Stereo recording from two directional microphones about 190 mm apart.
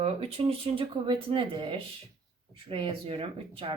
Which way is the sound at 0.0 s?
30° right (ahead or behind).